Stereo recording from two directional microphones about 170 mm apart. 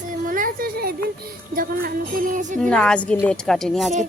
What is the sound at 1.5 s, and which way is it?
A woman's voice, 55° right (ahead or behind).